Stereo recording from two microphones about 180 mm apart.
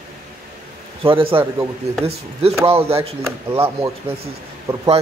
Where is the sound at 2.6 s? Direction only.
30° right (ahead or behind).